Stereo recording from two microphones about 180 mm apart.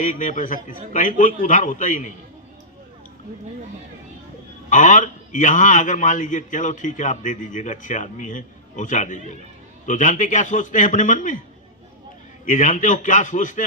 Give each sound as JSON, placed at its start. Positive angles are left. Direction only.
{"t": 0.0, "sound": "a man's voice", "side_deg": 45}
{"t": 4.7, "sound": "a man's voice", "side_deg": 45}
{"t": 12.5, "sound": "a man's voice", "side_deg": 45}